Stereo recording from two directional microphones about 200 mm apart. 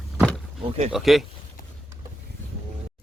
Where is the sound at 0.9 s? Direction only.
Centre (ahead or behind).